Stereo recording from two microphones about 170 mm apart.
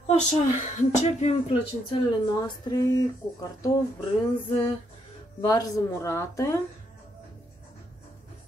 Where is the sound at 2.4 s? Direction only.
25° left (ahead or behind).